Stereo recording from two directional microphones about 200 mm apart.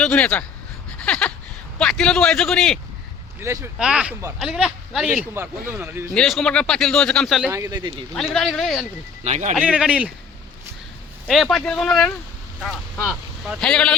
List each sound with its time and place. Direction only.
0.0 s speech: 5° left (ahead or behind)
1.0 s a sound: 5° left (ahead or behind)
1.8 s speech: 5° left (ahead or behind)
3.4 s a man's voice: 15° right (ahead or behind)
6.1 s speech: centre (ahead or behind)
7.5 s speech: 15° right (ahead or behind)
8.1 s speech: 5° left (ahead or behind)
9.2 s speech: 35° right (ahead or behind)
9.6 s speech: 5° right (ahead or behind)
11.3 s speech: centre (ahead or behind)